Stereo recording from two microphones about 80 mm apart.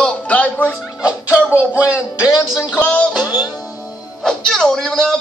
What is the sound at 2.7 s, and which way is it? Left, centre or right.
Music, centre.